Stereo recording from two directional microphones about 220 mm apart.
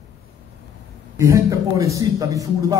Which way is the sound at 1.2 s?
15° right (ahead or behind).